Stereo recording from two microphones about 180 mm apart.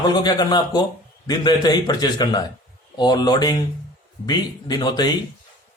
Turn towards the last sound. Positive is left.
turn(degrees=20)  # may be behind; listen again after turning